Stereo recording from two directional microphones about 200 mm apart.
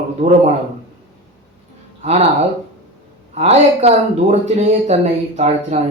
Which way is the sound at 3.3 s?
35° right (ahead or behind).